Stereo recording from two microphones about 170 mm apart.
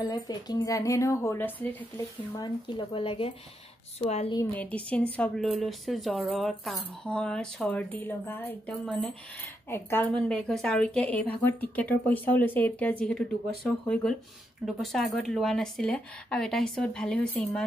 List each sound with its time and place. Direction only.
0.1 s speech: 20° left (ahead or behind)
2.3 s speech: 25° left (ahead or behind)
4.6 s a woman's voice: 10° left (ahead or behind)